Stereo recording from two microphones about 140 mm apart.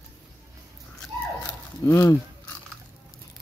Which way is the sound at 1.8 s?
20° left (ahead or behind).